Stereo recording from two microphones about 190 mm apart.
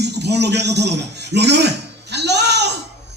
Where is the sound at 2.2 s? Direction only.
60° right (ahead or behind).